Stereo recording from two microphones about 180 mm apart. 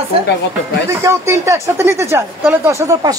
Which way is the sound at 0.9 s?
15° right (ahead or behind).